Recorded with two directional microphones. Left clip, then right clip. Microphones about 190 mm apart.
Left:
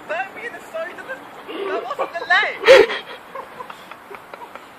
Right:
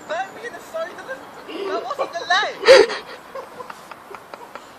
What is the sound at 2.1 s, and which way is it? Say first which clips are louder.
Gasp: left 3 dB; 5° right (ahead or behind).